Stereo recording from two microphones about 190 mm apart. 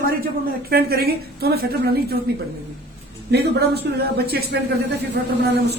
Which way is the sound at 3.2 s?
60° right (ahead or behind).